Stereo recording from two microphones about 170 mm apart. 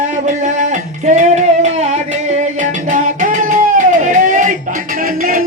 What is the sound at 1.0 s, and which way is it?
Music, 45° right (ahead or behind).